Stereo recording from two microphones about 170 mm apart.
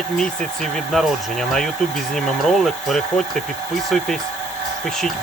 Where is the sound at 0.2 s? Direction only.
Centre (ahead or behind).